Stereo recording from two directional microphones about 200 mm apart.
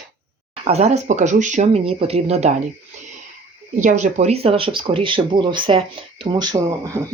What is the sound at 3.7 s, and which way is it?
Speech, 40° right (ahead or behind).